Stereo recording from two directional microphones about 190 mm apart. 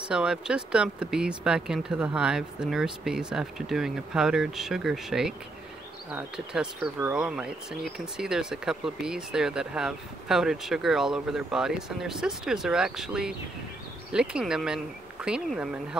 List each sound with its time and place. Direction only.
0.1 s speech: 5° right (ahead or behind)